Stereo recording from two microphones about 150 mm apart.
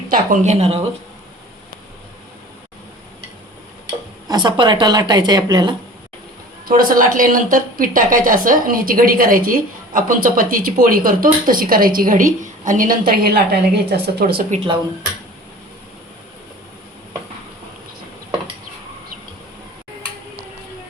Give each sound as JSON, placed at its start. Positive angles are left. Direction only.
{"t": 0.1, "sound": "speech", "side_deg": -55}
{"t": 4.3, "sound": "a woman's voice", "side_deg": -30}
{"t": 6.7, "sound": "speech", "side_deg": -70}
{"t": 14.5, "sound": "speech", "side_deg": -40}